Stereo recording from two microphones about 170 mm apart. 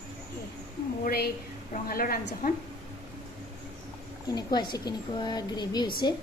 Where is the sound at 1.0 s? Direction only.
60° left (ahead or behind).